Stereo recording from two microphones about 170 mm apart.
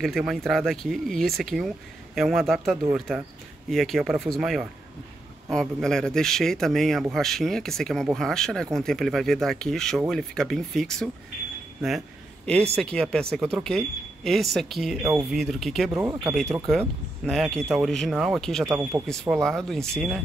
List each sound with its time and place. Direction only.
0.0 s a man's voice: centre (ahead or behind)
12.7 s a man's voice: 5° left (ahead or behind)
15.9 s speech: 20° right (ahead or behind)
16.6 s a man's voice: centre (ahead or behind)
18.8 s speech: 15° right (ahead or behind)
19.4 s a man's voice: 5° left (ahead or behind)